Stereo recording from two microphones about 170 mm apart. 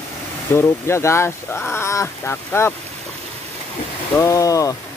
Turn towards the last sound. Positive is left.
turn(degrees=20)  # may be behind; listen again after turning